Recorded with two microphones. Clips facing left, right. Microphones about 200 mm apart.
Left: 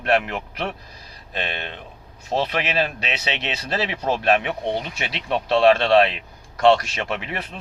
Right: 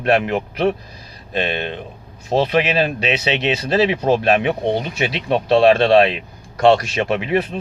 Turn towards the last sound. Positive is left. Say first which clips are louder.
# right 10 dB
turn(degrees=-15)  # may be behind; listen again after turning